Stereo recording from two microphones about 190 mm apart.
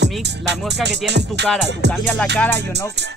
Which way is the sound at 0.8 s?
65° right (ahead or behind).